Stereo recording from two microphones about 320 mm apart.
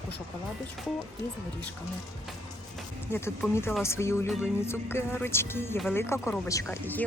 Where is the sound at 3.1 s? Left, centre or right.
Centre.